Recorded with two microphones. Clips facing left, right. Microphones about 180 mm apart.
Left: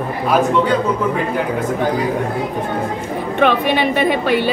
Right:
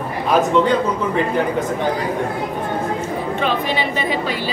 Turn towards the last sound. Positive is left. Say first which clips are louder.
# left 6 dB
turn(degrees=60)  # may be behind; listen again after turning